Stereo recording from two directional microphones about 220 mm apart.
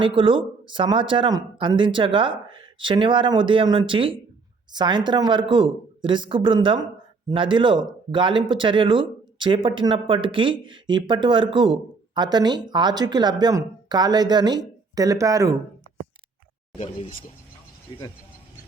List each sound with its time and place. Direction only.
0.0 s speech: 25° right (ahead or behind)
16.7 s speech: 25° left (ahead or behind)